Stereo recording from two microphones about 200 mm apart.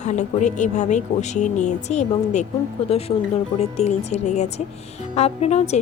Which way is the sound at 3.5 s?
35° left (ahead or behind).